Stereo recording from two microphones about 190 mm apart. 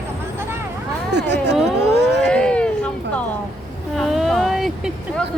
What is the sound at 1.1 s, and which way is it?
Speech, 65° right (ahead or behind).